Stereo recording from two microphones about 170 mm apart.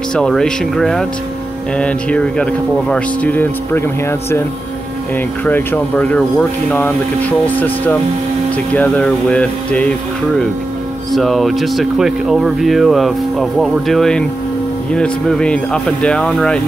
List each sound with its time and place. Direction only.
0.1 s speech: 5° left (ahead or behind)
5.4 s speech: 10° left (ahead or behind)
11.1 s speech: centre (ahead or behind)